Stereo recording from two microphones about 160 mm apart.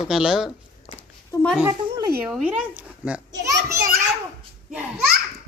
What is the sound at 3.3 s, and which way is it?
Children playing, 20° right (ahead or behind).